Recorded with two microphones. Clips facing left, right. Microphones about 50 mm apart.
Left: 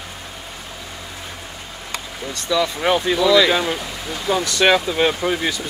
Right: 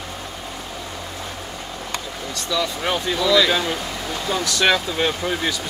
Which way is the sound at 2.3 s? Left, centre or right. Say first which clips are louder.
Left 4 dB; centre.